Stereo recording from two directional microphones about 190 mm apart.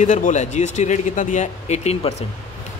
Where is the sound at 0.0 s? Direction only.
40° left (ahead or behind).